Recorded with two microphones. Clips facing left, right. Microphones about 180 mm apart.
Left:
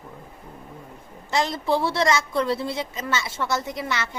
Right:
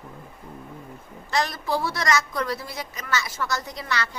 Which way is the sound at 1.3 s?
25° left (ahead or behind).